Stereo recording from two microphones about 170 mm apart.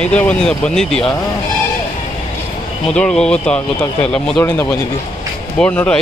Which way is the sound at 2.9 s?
5° left (ahead or behind).